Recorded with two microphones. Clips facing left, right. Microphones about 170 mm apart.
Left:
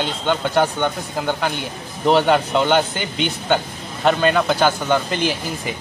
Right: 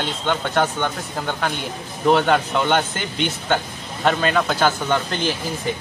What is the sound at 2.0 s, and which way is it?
Speech, 20° left (ahead or behind).